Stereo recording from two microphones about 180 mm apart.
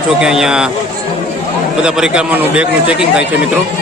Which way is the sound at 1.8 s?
5° right (ahead or behind).